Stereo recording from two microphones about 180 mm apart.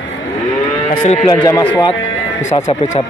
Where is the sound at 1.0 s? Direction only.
35° left (ahead or behind).